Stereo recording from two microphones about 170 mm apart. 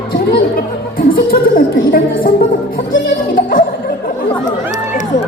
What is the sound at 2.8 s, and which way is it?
Laughter, 55° left (ahead or behind).